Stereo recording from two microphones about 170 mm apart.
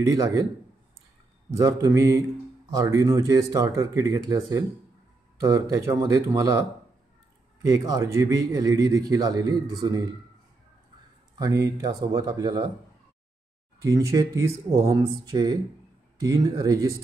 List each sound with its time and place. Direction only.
0.0 s a man's voice: 20° right (ahead or behind)
1.6 s a man's voice: 20° right (ahead or behind)
7.6 s a man's voice: 20° right (ahead or behind)
11.3 s a man's voice: 20° right (ahead or behind)
13.8 s a man's voice: 20° right (ahead or behind)